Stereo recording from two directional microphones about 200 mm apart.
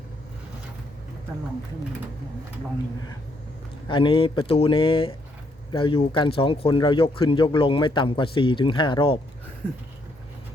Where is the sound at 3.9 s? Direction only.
25° left (ahead or behind).